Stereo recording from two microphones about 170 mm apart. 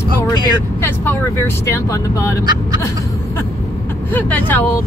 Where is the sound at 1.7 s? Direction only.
15° left (ahead or behind).